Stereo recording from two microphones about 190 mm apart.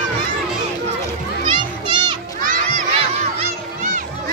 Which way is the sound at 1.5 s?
25° right (ahead or behind).